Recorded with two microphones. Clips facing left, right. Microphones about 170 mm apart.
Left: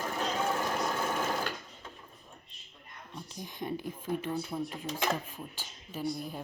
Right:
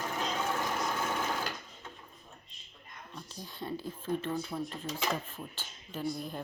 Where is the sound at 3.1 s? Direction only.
15° left (ahead or behind).